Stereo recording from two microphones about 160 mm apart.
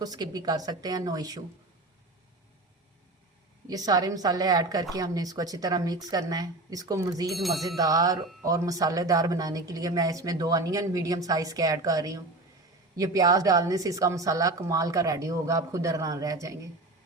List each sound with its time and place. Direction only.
0.0 s speech: 25° right (ahead or behind)
3.7 s speech: 25° right (ahead or behind)
7.3 s a sound: centre (ahead or behind)
7.8 s speech: 20° right (ahead or behind)